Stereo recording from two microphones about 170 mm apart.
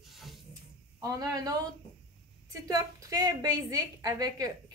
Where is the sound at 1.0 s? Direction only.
20° right (ahead or behind).